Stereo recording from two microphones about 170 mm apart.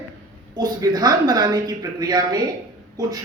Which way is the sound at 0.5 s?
25° right (ahead or behind).